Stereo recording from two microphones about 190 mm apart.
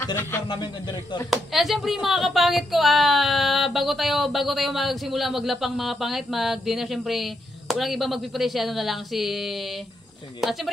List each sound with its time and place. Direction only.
0.0 s speech: 15° left (ahead or behind)
1.3 s speech: centre (ahead or behind)